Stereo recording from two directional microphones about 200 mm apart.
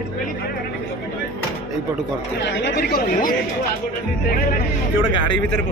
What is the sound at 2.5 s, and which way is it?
Speech, 60° left (ahead or behind).